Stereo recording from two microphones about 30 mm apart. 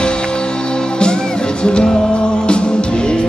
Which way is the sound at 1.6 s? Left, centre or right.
Left.